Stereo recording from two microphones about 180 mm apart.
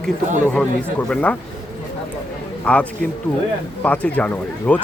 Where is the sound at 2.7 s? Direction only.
5° left (ahead or behind).